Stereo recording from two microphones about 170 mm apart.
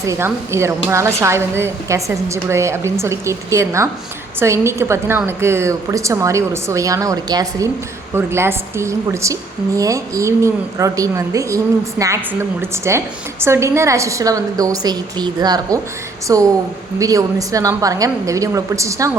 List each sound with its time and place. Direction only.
0.0 s a woman's voice: 15° right (ahead or behind)